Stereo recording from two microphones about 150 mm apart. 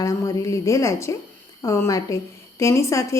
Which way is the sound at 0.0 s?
20° left (ahead or behind).